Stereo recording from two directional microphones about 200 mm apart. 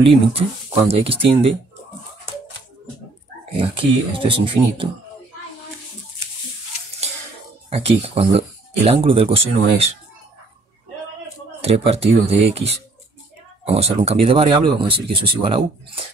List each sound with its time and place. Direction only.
0.0 s speech: 30° right (ahead or behind)
3.5 s speech: 30° right (ahead or behind)
7.7 s speech: 30° right (ahead or behind)
11.6 s speech: 30° right (ahead or behind)